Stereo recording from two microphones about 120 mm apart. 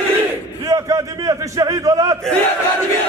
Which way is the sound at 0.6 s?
30° right (ahead or behind).